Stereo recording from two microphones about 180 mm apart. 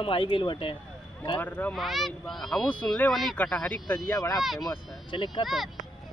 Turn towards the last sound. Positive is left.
turn(degrees=0)  # may be behind; listen again after turning